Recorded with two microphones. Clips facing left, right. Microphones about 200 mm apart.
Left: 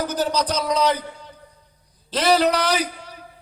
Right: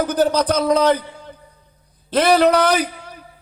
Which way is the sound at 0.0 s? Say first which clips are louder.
Right 5 dB; 55° right (ahead or behind).